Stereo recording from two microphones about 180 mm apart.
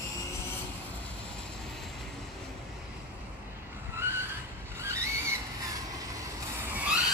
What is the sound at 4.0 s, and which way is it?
Vehicle, 10° right (ahead or behind).